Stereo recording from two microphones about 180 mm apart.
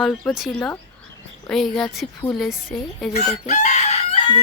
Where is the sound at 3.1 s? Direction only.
40° left (ahead or behind).